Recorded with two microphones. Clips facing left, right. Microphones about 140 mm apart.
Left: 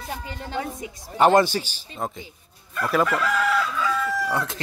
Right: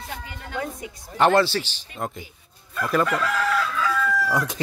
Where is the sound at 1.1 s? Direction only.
10° left (ahead or behind).